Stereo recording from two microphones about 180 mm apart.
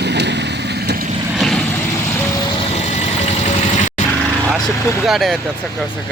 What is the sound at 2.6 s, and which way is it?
Vehicle, 35° left (ahead or behind).